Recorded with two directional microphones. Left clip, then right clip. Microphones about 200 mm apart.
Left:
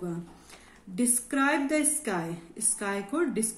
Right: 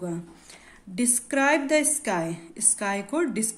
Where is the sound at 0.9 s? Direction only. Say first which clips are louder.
Right 3 dB; 45° right (ahead or behind).